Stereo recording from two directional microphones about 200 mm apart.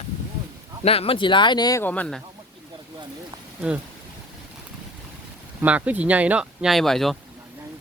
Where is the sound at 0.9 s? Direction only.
30° left (ahead or behind); by 2.2 s 5° left (ahead or behind).